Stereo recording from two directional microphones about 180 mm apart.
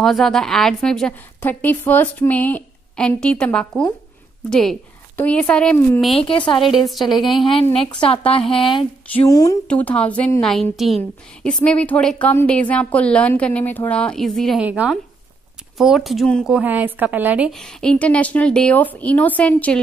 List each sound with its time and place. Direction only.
0.0 s a woman's voice: centre (ahead or behind)
6.1 s speech: 30° left (ahead or behind)
6.9 s a woman's voice: centre (ahead or behind)
7.4 s speech: 30° left (ahead or behind)
9.7 s a woman's voice: 5° left (ahead or behind); by 17.5 s 10° right (ahead or behind)
17.5 s a woman's voice: 5° left (ahead or behind)